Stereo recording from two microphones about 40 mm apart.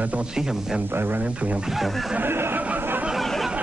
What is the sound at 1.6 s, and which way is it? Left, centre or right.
Speech, centre.